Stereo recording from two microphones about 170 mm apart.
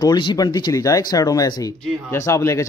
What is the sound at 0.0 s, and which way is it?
A man's voice, 25° left (ahead or behind).